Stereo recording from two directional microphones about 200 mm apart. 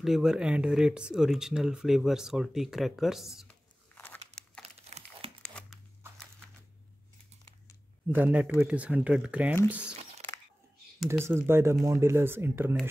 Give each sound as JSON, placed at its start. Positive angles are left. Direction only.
{"t": 0.0, "sound": "speech", "side_deg": 0}
{"t": 3.9, "sound": "crumpling", "side_deg": 10}
{"t": 4.8, "sound": "crumpling", "side_deg": -30}
{"t": 5.4, "sound": "a sound", "side_deg": 5}
{"t": 8.1, "sound": "speech", "side_deg": -10}
{"t": 11.1, "sound": "speech", "side_deg": -10}